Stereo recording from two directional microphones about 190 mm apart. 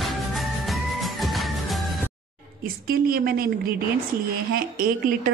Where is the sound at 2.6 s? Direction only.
50° right (ahead or behind).